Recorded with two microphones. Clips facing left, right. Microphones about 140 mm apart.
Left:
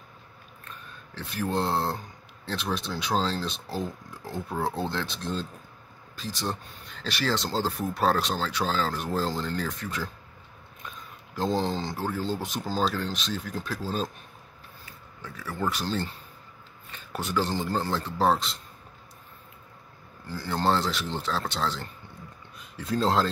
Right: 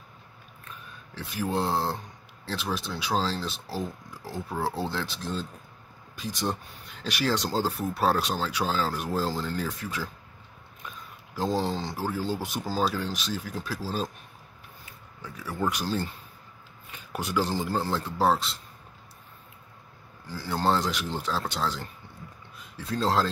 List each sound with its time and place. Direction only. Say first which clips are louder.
0.7 s speech: even; 10° right (ahead or behind)
15.2 s speech: right 1 dB; 10° right (ahead or behind)
20.2 s speech: even; 5° right (ahead or behind)